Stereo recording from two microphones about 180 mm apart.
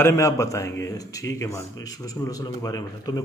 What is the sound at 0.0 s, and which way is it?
A man's voice, 15° left (ahead or behind).